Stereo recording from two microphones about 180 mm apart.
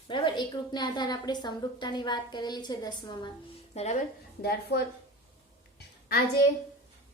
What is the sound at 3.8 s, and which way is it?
Speech, 35° left (ahead or behind).